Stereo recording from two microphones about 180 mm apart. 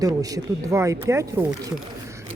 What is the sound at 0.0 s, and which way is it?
A woman's voice, 20° right (ahead or behind).